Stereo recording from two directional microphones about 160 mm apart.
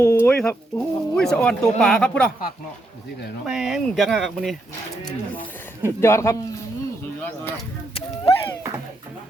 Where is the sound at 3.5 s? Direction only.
5° right (ahead or behind); by 6.4 s 15° left (ahead or behind).